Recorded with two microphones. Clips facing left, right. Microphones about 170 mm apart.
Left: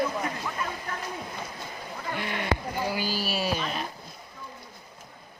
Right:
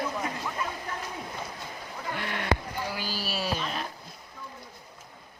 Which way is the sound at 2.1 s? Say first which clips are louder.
Even; centre (ahead or behind).